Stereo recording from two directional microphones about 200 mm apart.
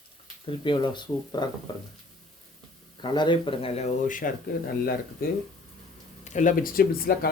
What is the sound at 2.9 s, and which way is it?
Speech, 25° left (ahead or behind).